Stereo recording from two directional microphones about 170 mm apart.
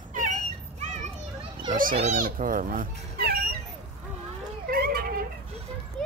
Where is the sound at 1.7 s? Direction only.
55° right (ahead or behind).